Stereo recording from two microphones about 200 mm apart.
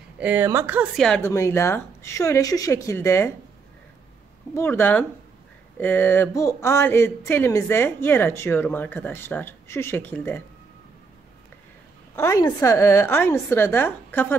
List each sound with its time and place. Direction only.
0.2 s speech: 10° right (ahead or behind)
0.9 s speech: 5° left (ahead or behind)
4.6 s speech: 10° left (ahead or behind)
12.2 s speech: 15° left (ahead or behind)